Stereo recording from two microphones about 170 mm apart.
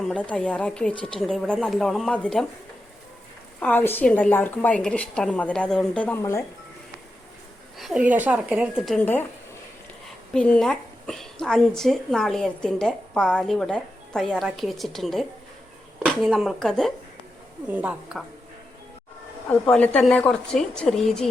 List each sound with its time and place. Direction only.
0.0 s a woman's voice: 5° left (ahead or behind)
3.6 s a woman's voice: 10° left (ahead or behind)
7.8 s a woman's voice: 5° right (ahead or behind)
9.0 s a woman's voice: 10° left (ahead or behind)
10.3 s a woman's voice: 5° left (ahead or behind)
17.7 s a woman's voice: 10° right (ahead or behind)
19.5 s a woman's voice: 5° left (ahead or behind)